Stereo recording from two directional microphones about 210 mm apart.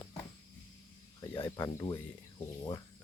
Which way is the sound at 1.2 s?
15° left (ahead or behind).